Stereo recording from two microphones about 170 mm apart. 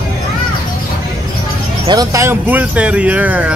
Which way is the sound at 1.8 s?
25° right (ahead or behind).